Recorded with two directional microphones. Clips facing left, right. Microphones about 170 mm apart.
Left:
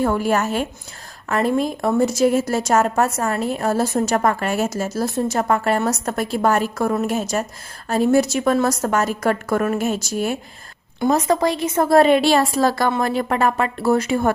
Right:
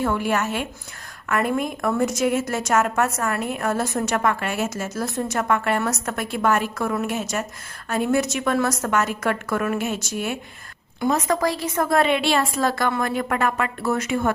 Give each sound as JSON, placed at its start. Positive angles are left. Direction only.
{"t": 0.0, "sound": "a woman's voice", "side_deg": 40}